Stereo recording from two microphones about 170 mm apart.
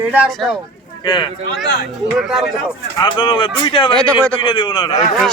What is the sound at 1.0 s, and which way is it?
Speech, 25° left (ahead or behind).